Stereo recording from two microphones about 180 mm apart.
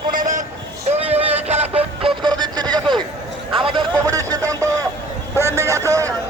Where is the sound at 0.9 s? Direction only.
35° right (ahead or behind); by 6.1 s 15° right (ahead or behind).